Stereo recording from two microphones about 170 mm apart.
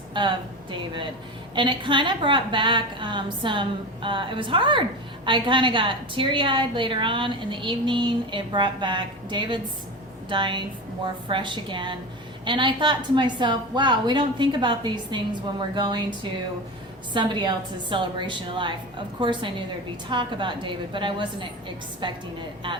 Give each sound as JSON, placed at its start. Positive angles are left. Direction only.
{"t": 0.1, "sound": "a woman's voice", "side_deg": -25}
{"t": 1.5, "sound": "a woman's voice", "side_deg": -30}
{"t": 17.2, "sound": "a woman's voice", "side_deg": -25}